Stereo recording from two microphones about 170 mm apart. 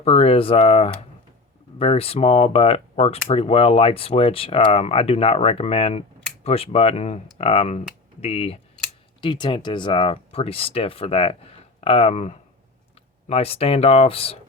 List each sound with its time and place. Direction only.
0.0 s speech: 35° left (ahead or behind)